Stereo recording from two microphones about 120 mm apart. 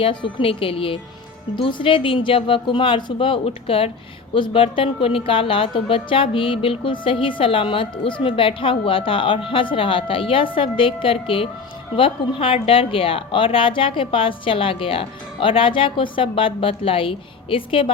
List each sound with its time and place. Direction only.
0.0 s a woman's voice: 45° left (ahead or behind)